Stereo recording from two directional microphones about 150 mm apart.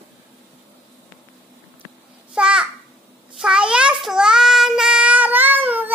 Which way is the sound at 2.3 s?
5° right (ahead or behind).